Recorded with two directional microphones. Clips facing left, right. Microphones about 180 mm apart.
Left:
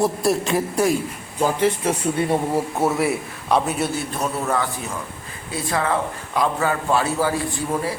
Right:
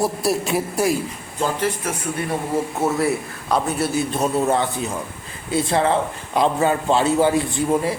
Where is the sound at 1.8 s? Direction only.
25° left (ahead or behind).